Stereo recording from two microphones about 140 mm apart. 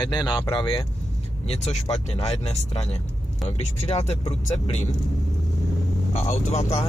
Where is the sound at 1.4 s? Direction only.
50° left (ahead or behind).